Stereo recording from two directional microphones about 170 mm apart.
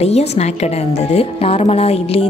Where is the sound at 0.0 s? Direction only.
40° left (ahead or behind).